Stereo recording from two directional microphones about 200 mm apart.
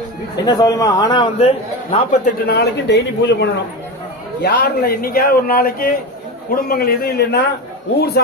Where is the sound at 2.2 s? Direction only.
50° left (ahead or behind).